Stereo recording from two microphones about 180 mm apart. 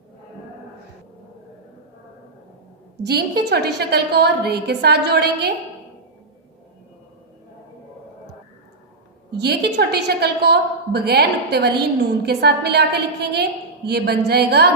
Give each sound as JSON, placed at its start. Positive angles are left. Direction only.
{"t": 3.0, "sound": "a woman's voice", "side_deg": -60}
{"t": 9.4, "sound": "a woman's voice", "side_deg": -65}